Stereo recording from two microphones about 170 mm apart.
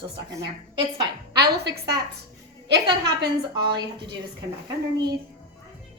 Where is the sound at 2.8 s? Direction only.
25° right (ahead or behind).